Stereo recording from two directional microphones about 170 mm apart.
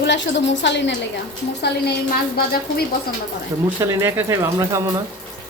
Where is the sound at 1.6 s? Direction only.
70° left (ahead or behind).